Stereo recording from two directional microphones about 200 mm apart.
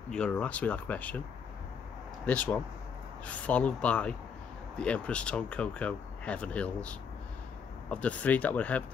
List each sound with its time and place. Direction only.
0.1 s speech: 5° left (ahead or behind)
2.2 s speech: 5° left (ahead or behind)